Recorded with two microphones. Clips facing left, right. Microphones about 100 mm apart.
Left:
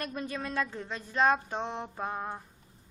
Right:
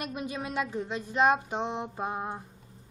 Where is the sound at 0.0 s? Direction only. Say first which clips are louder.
Right 1 dB; 15° right (ahead or behind).